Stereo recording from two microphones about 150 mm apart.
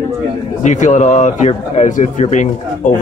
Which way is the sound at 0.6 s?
55° left (ahead or behind).